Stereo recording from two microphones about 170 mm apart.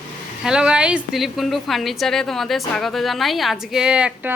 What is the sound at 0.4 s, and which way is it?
A woman's voice, 5° right (ahead or behind).